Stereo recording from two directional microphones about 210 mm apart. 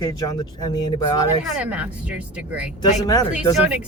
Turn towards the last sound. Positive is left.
turn(degrees=-5)  # may be behind; listen again after turning